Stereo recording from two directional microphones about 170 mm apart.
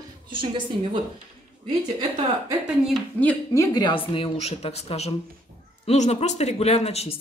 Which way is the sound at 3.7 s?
30° left (ahead or behind).